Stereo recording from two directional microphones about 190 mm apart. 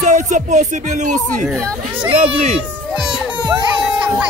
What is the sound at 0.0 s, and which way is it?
Speech, 40° right (ahead or behind).